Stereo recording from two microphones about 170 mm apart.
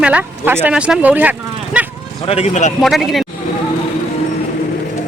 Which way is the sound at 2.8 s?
Centre (ahead or behind).